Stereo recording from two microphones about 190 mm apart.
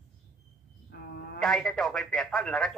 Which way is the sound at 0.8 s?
55° left (ahead or behind).